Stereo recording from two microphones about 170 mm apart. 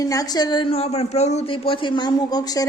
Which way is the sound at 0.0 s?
20° left (ahead or behind).